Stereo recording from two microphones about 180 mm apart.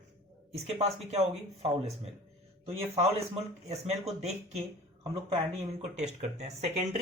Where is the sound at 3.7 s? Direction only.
35° right (ahead or behind).